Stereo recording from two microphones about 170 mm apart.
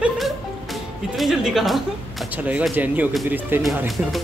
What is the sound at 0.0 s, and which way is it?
Speech, centre (ahead or behind).